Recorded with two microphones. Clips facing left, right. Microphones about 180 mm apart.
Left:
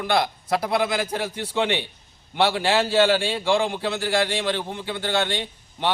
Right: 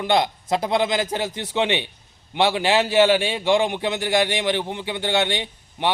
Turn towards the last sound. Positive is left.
turn(degrees=-20)  # may be behind; listen again after turning